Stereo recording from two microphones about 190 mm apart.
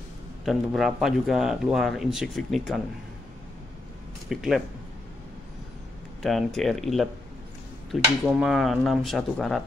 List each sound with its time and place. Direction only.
0.5 s speech: centre (ahead or behind)
4.3 s speech: centre (ahead or behind)
6.2 s speech: centre (ahead or behind)